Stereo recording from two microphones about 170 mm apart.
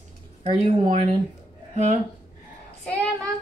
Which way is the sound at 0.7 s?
30° right (ahead or behind).